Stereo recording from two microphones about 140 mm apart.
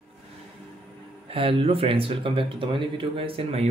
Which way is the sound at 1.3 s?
40° right (ahead or behind).